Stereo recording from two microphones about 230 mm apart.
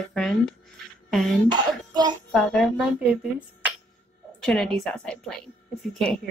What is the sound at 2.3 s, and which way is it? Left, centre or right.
Speech, centre.